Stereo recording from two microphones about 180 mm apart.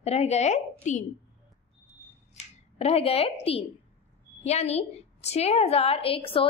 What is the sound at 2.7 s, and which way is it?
A woman's voice, 35° left (ahead or behind).